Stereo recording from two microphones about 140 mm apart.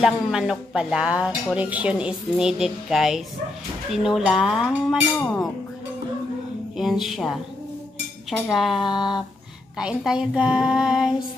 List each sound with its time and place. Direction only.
0.0 s speech: 5° right (ahead or behind)
6.8 s speech: centre (ahead or behind)
8.8 s a sound: 35° left (ahead or behind)
9.8 s speech: 5° right (ahead or behind)